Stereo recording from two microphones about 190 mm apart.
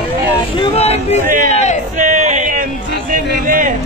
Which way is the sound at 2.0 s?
40° right (ahead or behind).